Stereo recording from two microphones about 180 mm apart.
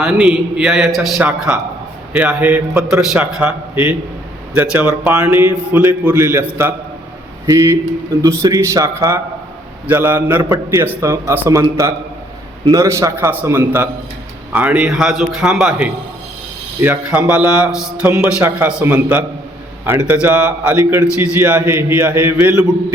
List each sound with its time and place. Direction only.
0.0 s a man's voice: 5° right (ahead or behind)